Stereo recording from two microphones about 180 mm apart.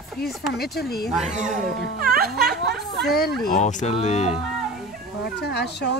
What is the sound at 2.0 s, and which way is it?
Speech, 60° right (ahead or behind).